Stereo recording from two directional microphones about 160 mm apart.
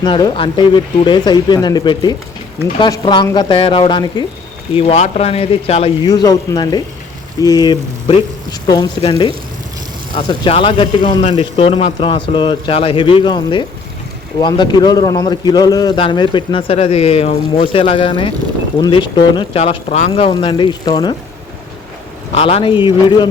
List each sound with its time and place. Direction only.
0.0 s a man's voice: 25° left (ahead or behind)
6.1 s a man's voice: 25° left (ahead or behind)
22.4 s a man's voice: 35° left (ahead or behind)